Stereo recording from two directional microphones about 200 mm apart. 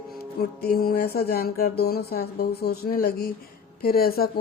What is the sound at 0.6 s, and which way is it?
Speech, 50° left (ahead or behind).